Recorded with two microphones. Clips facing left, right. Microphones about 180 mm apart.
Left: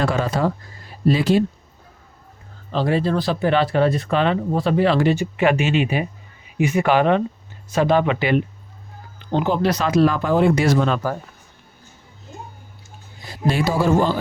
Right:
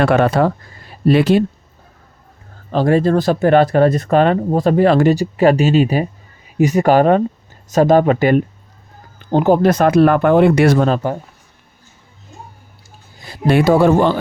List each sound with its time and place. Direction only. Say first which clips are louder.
0.0 s speech: right 7 dB; 65° right (ahead or behind)
2.7 s speech: right 6 dB; 45° right (ahead or behind)
11.0 s speech: right 4 dB; 25° right (ahead or behind)
13.5 s speech: right 7 dB; 60° right (ahead or behind)